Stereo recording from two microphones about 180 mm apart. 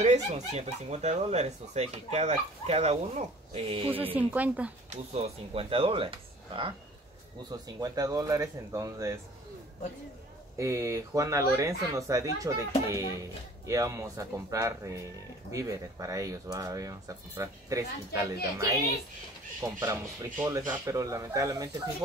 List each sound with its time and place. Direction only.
0.0 s speech: 40° right (ahead or behind)
4.1 s speech: 10° right (ahead or behind)
4.8 s speech: 35° right (ahead or behind); by 9.2 s 15° right (ahead or behind)
10.6 s speech: 15° right (ahead or behind)